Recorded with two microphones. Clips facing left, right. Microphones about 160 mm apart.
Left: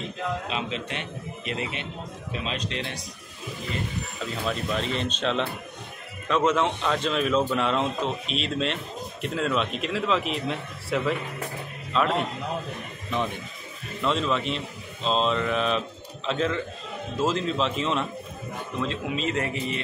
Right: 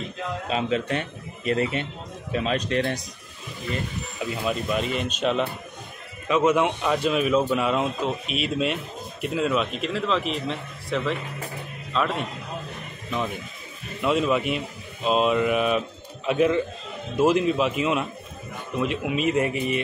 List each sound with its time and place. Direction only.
0.5 s a man's voice: 45° right (ahead or behind)
4.2 s a man's voice: 10° right (ahead or behind)
14.0 s speech: 10° right (ahead or behind)